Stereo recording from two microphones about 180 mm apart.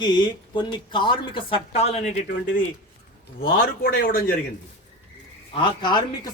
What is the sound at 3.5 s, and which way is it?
Speech, 55° left (ahead or behind).